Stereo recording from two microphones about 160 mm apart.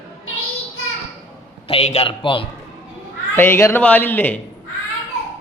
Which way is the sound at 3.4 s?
15° left (ahead or behind).